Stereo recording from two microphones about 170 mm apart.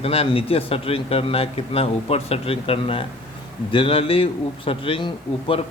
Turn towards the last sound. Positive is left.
turn(degrees=30)  # may be behind; listen again after turning